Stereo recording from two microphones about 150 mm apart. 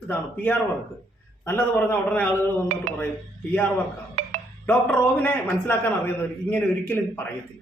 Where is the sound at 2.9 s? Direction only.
50° right (ahead or behind).